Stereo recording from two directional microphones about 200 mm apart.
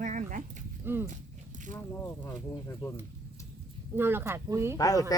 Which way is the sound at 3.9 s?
10° right (ahead or behind).